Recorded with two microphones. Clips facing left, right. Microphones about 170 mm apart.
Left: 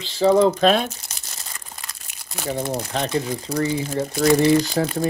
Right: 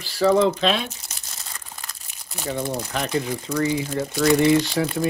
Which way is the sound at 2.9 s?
30° left (ahead or behind).